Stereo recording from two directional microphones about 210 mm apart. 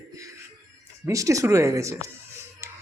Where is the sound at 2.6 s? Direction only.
10° right (ahead or behind).